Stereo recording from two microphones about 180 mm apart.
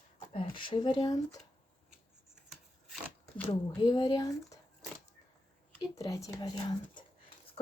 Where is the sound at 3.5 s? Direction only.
25° left (ahead or behind).